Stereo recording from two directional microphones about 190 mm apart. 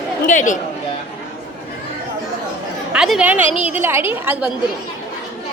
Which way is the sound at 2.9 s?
5° right (ahead or behind).